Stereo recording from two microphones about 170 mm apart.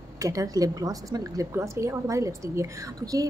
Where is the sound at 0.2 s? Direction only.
20° right (ahead or behind).